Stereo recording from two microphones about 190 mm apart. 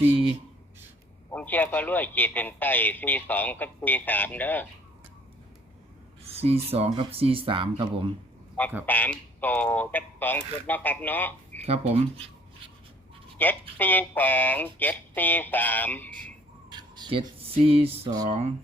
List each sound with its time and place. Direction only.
1.3 s a man's voice: 10° left (ahead or behind)
6.2 s speech: 30° right (ahead or behind)
8.6 s a man's voice: 10° left (ahead or behind)
11.6 s speech: 30° right (ahead or behind)
13.4 s a man's voice: 10° left (ahead or behind)
16.6 s a sound: 25° right (ahead or behind)
18.3 s speech: 35° right (ahead or behind)